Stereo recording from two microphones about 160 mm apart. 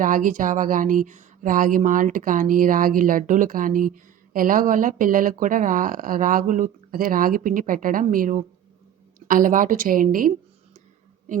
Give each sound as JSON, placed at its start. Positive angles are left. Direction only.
{"t": 0.0, "sound": "speech", "side_deg": -55}